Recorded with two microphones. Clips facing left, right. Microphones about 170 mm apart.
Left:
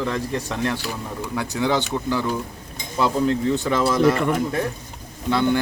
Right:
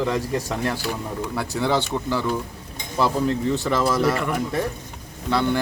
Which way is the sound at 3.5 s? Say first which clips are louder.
Left 1 dB; centre (ahead or behind).